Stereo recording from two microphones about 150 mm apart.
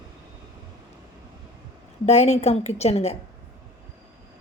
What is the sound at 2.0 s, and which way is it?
A woman's voice, 50° left (ahead or behind).